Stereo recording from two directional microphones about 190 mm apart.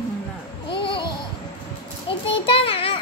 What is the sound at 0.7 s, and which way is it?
Babbling, 25° left (ahead or behind).